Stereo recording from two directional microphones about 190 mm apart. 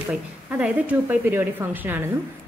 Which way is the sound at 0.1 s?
5° right (ahead or behind).